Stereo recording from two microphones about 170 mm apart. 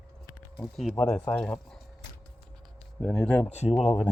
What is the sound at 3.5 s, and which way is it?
Speech, 40° left (ahead or behind).